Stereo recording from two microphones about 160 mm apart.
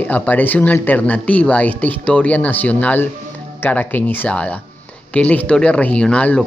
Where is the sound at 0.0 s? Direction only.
10° left (ahead or behind).